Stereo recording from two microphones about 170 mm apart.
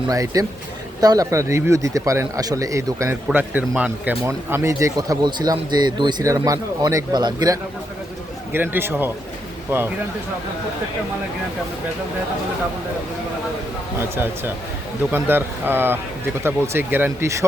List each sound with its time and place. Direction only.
0.1 s a man's voice: 20° right (ahead or behind)
8.5 s speech: 10° right (ahead or behind)
15.1 s speech: 10° right (ahead or behind)